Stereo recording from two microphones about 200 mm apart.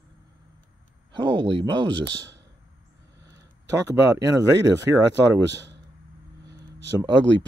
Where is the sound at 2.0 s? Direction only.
65° right (ahead or behind).